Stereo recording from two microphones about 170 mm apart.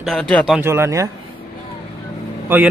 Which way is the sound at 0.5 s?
15° right (ahead or behind).